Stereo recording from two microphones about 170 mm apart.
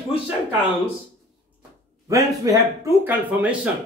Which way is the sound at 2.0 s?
20° right (ahead or behind).